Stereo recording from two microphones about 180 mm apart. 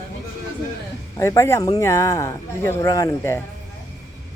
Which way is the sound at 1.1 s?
15° left (ahead or behind).